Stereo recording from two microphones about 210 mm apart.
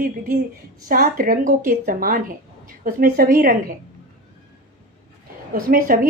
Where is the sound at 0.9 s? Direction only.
40° right (ahead or behind).